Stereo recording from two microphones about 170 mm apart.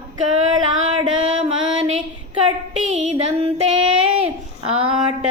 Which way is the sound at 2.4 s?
40° right (ahead or behind).